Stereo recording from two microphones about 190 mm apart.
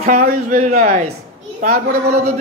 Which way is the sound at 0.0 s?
45° right (ahead or behind).